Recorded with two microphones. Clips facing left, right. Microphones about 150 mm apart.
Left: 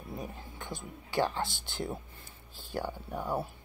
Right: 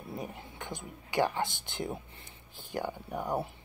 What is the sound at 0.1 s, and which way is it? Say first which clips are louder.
Speech: right 1 dB; 20° right (ahead or behind).